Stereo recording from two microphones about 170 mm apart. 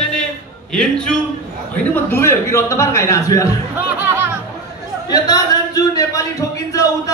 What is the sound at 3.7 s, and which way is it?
Speech, 15° right (ahead or behind).